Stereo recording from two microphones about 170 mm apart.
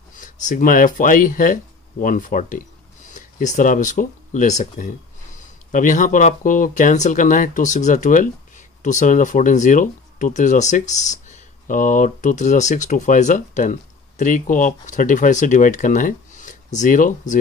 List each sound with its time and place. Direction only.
0.1 s speech: 50° left (ahead or behind)